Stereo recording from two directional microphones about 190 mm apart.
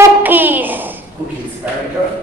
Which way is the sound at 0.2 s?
10° right (ahead or behind).